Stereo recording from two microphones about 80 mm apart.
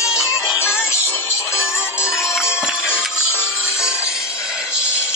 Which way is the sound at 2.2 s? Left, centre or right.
Centre.